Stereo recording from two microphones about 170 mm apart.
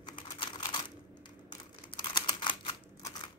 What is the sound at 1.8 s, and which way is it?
Typing, 25° left (ahead or behind).